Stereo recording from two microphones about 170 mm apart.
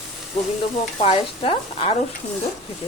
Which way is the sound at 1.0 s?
35° left (ahead or behind).